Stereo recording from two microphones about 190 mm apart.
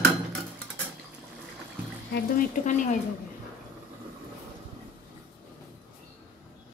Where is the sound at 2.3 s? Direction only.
40° left (ahead or behind).